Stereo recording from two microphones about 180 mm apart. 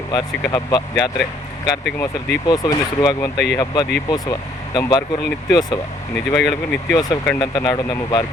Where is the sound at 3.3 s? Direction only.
70° left (ahead or behind).